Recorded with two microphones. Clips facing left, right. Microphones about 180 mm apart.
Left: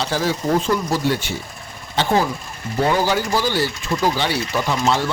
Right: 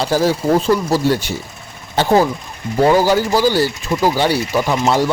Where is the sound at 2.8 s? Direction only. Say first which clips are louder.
Right 6 dB; 40° right (ahead or behind).